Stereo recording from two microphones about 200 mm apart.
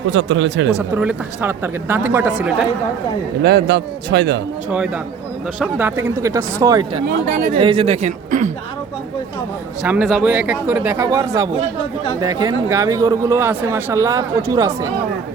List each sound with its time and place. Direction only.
0.1 s speech: 70° right (ahead or behind)
0.7 s speech: 5° right (ahead or behind)
3.4 s a man's voice: 55° right (ahead or behind)
5.7 s speech: 10° right (ahead or behind); by 8.5 s 40° right (ahead or behind)
9.8 s speech: 5° right (ahead or behind)